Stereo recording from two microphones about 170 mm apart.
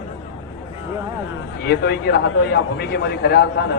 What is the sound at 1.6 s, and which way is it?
A man's voice, 75° left (ahead or behind).